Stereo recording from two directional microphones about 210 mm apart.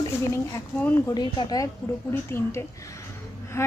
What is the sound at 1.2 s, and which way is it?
Speech, 20° left (ahead or behind).